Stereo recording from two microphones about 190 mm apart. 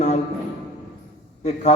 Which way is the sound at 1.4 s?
35° left (ahead or behind).